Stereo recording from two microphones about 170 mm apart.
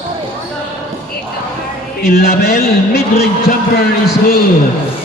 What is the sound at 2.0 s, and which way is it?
A man's voice, 65° left (ahead or behind).